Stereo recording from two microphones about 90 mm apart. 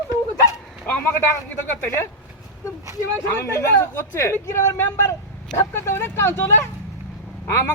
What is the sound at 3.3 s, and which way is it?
Speech, 30° left (ahead or behind).